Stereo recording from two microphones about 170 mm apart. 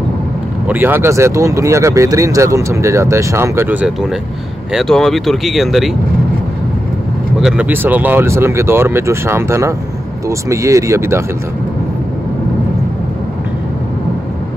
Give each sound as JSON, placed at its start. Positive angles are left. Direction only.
{"t": 0.7, "sound": "speech", "side_deg": -10}
{"t": 7.4, "sound": "speech", "side_deg": -10}